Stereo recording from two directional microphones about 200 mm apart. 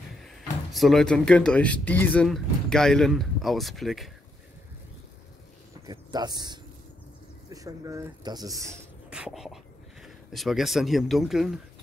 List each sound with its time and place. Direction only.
0.7 s speech: centre (ahead or behind)
5.9 s speech: 20° right (ahead or behind)
9.1 s speech: 5° right (ahead or behind)